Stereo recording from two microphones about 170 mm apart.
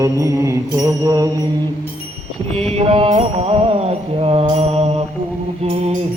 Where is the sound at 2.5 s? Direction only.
35° right (ahead or behind).